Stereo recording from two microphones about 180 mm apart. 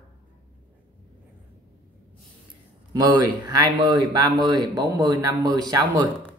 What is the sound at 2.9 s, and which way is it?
Speech, 20° right (ahead or behind).